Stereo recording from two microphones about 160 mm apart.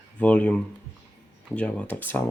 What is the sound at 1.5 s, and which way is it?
Speech, 5° left (ahead or behind).